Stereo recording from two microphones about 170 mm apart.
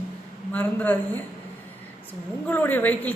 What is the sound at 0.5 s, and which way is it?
Speech, 10° left (ahead or behind).